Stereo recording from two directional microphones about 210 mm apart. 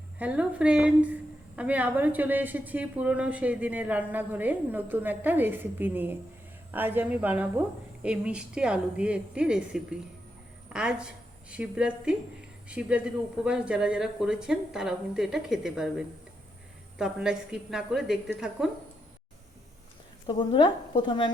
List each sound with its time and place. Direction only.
0.2 s a woman's voice: 5° right (ahead or behind)
20.2 s speech: 20° left (ahead or behind)